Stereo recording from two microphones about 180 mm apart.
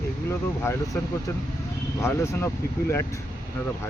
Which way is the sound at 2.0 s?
15° left (ahead or behind).